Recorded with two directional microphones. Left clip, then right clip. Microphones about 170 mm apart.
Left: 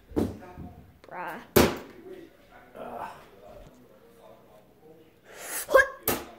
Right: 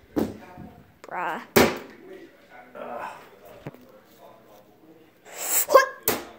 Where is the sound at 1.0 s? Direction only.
25° right (ahead or behind).